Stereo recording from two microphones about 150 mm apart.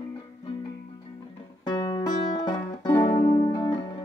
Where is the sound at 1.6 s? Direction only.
25° left (ahead or behind).